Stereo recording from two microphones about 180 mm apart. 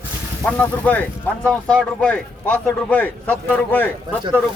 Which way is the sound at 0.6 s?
10° left (ahead or behind).